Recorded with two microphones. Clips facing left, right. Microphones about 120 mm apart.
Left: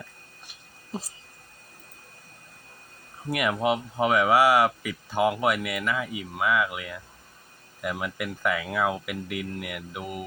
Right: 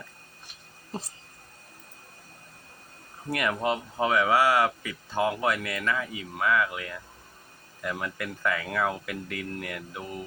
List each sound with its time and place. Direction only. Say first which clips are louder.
0.9 s speech: left 1 dB; centre (ahead or behind)
3.2 s speech: left 2 dB; 15° left (ahead or behind)